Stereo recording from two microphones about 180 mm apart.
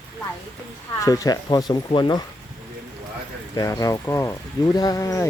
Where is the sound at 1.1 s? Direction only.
20° left (ahead or behind).